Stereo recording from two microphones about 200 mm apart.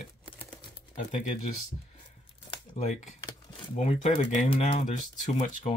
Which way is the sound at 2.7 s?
35° left (ahead or behind).